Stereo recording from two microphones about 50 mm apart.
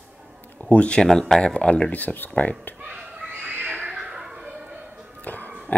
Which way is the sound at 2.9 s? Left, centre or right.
Centre.